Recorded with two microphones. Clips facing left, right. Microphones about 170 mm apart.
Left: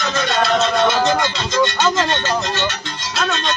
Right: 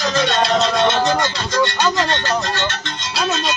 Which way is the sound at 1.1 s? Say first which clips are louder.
Even; 15° left (ahead or behind).